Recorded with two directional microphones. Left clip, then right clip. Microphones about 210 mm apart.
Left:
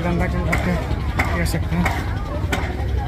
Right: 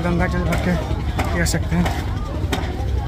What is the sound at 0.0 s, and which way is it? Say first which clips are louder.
Speech: right 2 dB; 10° right (ahead or behind).